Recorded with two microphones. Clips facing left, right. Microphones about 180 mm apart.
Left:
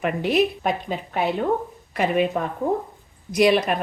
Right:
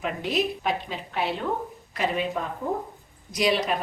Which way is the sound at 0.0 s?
60° left (ahead or behind).